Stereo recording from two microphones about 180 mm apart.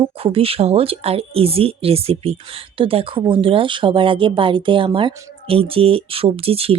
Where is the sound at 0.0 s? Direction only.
30° right (ahead or behind).